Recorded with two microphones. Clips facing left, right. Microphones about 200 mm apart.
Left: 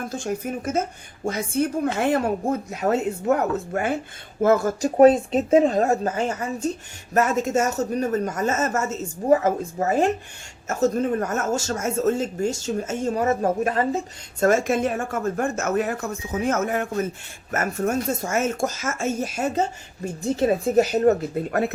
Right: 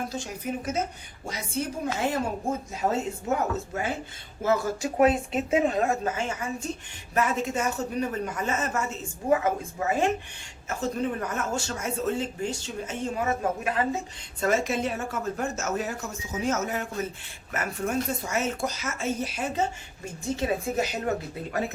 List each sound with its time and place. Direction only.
0.1 s a woman's voice: 50° left (ahead or behind)
4.4 s a woman's voice: 45° left (ahead or behind)